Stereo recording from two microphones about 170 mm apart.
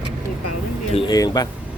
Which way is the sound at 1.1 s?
20° left (ahead or behind).